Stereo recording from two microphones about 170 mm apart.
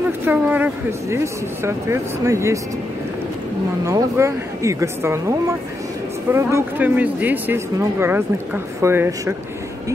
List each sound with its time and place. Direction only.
0.2 s speech: 10° right (ahead or behind)
3.8 s speech: 20° right (ahead or behind)